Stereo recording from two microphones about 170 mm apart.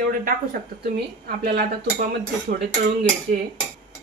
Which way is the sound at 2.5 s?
60° right (ahead or behind).